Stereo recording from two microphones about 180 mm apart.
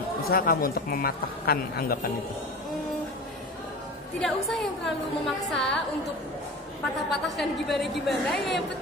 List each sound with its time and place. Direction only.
0.3 s a woman's voice: 55° left (ahead or behind)
4.2 s a woman's voice: centre (ahead or behind)
7.2 s a woman's voice: centre (ahead or behind)